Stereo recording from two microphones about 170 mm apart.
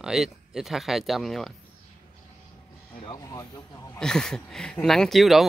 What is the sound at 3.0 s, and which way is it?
Speech, 25° left (ahead or behind).